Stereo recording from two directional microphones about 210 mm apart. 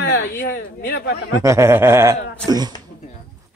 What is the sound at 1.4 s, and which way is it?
Speech, 10° right (ahead or behind).